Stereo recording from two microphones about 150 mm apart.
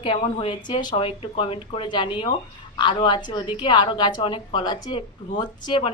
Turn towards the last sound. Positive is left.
turn(degrees=35)  # may be behind; listen again after turning